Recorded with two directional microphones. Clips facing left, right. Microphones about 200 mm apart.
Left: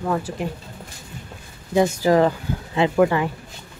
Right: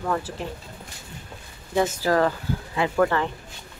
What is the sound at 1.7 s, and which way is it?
Speech, 15° left (ahead or behind).